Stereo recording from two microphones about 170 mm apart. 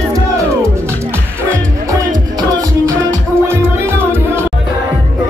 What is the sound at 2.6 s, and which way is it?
Music, 20° right (ahead or behind).